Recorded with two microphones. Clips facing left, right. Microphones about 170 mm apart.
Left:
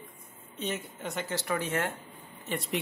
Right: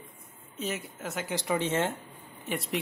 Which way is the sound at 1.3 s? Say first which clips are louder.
Right 3 dB; 20° right (ahead or behind).